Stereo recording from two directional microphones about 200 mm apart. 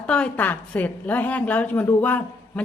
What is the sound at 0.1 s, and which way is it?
A woman's voice, 5° left (ahead or behind).